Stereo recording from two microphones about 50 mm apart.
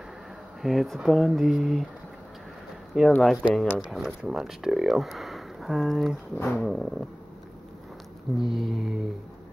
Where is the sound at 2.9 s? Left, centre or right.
Centre.